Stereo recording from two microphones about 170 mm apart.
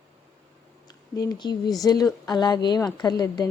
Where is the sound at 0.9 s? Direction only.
20° left (ahead or behind).